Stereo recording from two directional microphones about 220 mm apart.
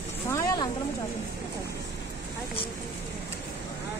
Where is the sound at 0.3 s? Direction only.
15° left (ahead or behind).